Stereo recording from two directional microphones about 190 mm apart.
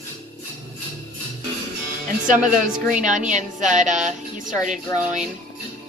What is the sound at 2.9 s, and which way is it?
A woman's voice, 40° right (ahead or behind).